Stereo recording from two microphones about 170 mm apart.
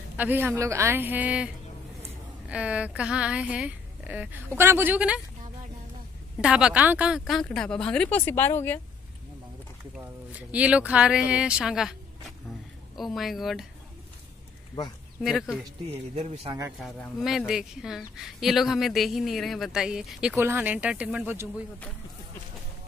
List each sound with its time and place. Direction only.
0.2 s speech: 10° right (ahead or behind)
6.4 s speech: 5° right (ahead or behind); by 8.8 s 10° left (ahead or behind)
10.5 s speech: 5° right (ahead or behind)
12.9 s speech: centre (ahead or behind)
15.2 s speech: centre (ahead or behind)
16.2 s speech: 35° right (ahead or behind)
17.5 s speech: 5° right (ahead or behind)